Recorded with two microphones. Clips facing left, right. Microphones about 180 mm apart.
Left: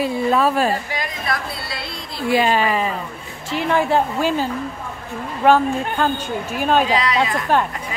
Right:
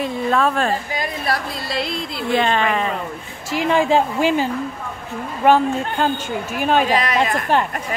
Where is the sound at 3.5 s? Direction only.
15° right (ahead or behind).